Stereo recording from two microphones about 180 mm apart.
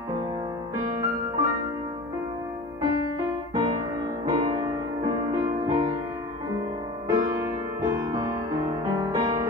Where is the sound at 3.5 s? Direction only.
20° right (ahead or behind).